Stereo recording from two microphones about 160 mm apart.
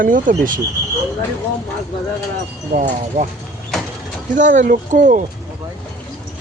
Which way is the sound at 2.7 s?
55° right (ahead or behind).